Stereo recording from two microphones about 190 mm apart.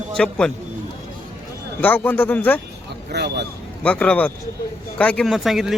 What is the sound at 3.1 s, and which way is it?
Speech, 60° right (ahead or behind).